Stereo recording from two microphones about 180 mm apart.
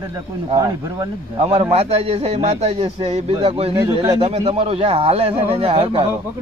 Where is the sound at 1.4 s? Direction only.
35° right (ahead or behind).